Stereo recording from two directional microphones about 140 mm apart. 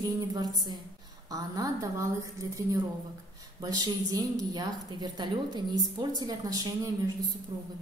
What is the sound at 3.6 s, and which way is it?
A woman's voice, 25° right (ahead or behind).